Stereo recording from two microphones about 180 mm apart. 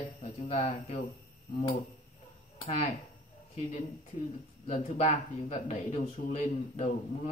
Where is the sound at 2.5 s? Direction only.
30° left (ahead or behind).